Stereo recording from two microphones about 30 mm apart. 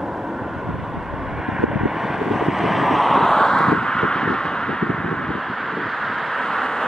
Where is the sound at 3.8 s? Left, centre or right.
Left.